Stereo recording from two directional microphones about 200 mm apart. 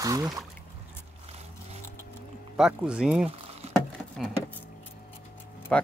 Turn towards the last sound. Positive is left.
turn(degrees=5)  # may be behind; listen again after turning